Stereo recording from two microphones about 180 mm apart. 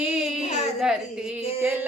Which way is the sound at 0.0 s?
5° right (ahead or behind).